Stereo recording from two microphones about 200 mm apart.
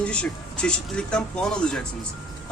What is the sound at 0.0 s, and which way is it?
A man's voice, 5° left (ahead or behind).